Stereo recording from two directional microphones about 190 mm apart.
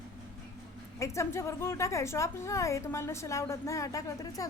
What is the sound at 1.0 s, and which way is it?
Speech, 15° left (ahead or behind).